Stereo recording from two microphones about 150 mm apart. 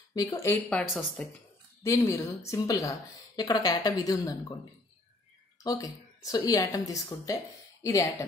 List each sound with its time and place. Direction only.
0.1 s a woman's voice: 20° left (ahead or behind)
0.7 s speech: 5° left (ahead or behind)
1.8 s a woman's voice: 20° left (ahead or behind)
5.6 s a woman's voice: 25° left (ahead or behind)